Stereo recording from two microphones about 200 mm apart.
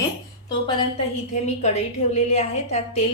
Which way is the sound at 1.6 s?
35° left (ahead or behind).